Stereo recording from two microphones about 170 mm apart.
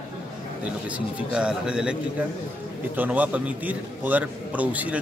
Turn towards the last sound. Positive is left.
turn(degrees=-10)  # may be behind; listen again after turning